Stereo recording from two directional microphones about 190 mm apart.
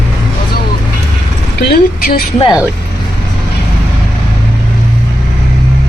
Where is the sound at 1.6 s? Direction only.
55° left (ahead or behind).